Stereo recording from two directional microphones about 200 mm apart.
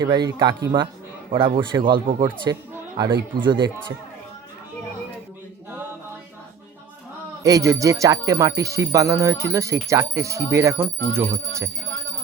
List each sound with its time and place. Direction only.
0.0 s speech: 20° right (ahead or behind)
7.4 s speech: 15° right (ahead or behind)